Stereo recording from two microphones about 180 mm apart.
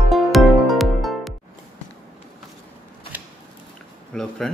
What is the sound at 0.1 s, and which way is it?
Music, centre (ahead or behind).